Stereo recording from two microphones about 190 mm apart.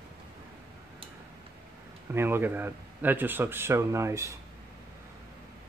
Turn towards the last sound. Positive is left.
turn(degrees=-15)  # may be behind; listen again after turning